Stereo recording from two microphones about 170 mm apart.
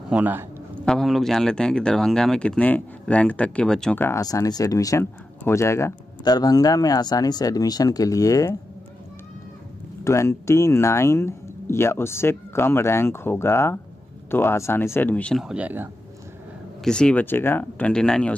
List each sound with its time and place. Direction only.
0.1 s a man's voice: 10° right (ahead or behind)
0.8 s speech: centre (ahead or behind)
4.2 s speech: 20° left (ahead or behind)
10.0 s speech: 15° left (ahead or behind); by 15.9 s 10° right (ahead or behind)
16.8 s speech: 5° left (ahead or behind)